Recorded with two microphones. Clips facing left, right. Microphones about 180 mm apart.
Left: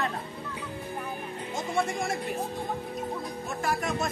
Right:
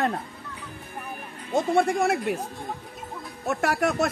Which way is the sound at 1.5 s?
60° right (ahead or behind).